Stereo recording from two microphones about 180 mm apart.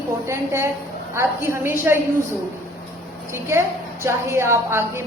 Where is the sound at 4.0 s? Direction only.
15° right (ahead or behind).